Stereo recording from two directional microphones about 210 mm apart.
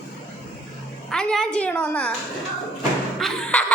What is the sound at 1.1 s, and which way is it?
A woman's voice, 5° left (ahead or behind).